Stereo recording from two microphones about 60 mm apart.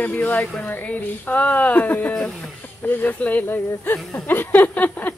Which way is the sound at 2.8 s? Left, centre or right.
Left.